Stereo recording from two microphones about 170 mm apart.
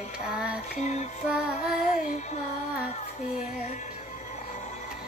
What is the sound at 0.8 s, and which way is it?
Music, 40° left (ahead or behind).